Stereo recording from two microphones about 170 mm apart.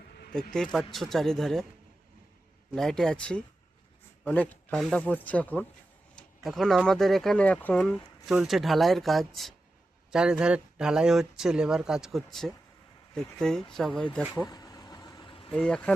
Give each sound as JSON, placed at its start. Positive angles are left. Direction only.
{"t": 0.5, "sound": "speech", "side_deg": 0}
{"t": 2.7, "sound": "speech", "side_deg": 5}
{"t": 14.3, "sound": "vehicle", "side_deg": 20}
{"t": 15.5, "sound": "speech", "side_deg": 5}